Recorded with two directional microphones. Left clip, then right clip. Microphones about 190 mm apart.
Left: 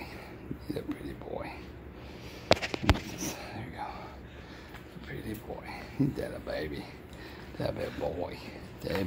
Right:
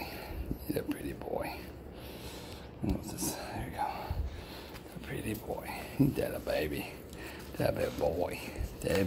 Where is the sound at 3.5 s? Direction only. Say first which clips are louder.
Right 4 dB; 15° right (ahead or behind).